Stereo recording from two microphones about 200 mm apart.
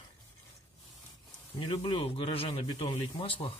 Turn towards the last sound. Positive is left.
turn(degrees=25)  # may be behind; listen again after turning